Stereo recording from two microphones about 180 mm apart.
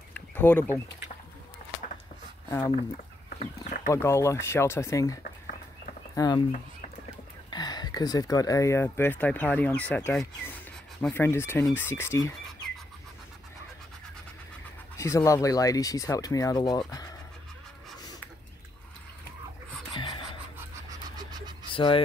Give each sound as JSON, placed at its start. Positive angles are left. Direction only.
{"t": 0.1, "sound": "a sound", "side_deg": 10}
{"t": 1.6, "sound": "a sound", "side_deg": 50}
{"t": 3.3, "sound": "chicken", "side_deg": 40}
{"t": 3.9, "sound": "speech", "side_deg": 15}
{"t": 7.5, "sound": "speech", "side_deg": 25}
{"t": 15.0, "sound": "speech", "side_deg": 15}
{"t": 19.9, "sound": "a sound", "side_deg": 25}
{"t": 21.2, "sound": "pant", "side_deg": -20}
{"t": 21.7, "sound": "speech", "side_deg": 30}